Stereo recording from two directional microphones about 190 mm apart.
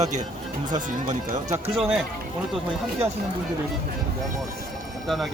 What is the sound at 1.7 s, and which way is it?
Speech, centre (ahead or behind).